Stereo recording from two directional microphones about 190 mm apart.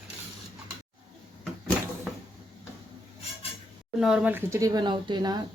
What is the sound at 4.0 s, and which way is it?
Speech, centre (ahead or behind).